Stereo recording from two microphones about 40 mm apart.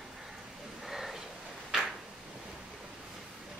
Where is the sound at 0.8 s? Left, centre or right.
Centre.